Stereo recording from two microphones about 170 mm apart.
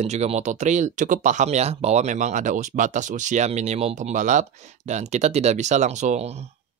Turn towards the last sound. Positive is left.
turn(degrees=-40)  # may be behind; listen again after turning